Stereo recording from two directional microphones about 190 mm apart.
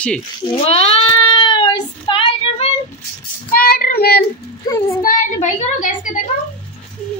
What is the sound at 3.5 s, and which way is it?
Child singing, 50° left (ahead or behind).